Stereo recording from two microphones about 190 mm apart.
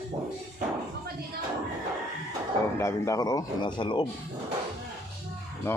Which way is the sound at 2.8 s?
15° left (ahead or behind).